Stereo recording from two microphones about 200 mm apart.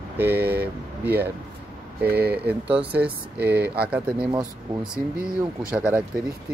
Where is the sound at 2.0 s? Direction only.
50° right (ahead or behind).